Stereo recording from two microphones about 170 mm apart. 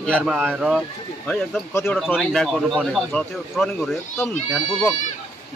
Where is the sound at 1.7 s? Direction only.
15° left (ahead or behind).